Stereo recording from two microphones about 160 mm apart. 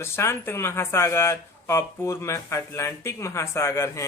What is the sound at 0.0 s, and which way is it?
Speech, 15° left (ahead or behind).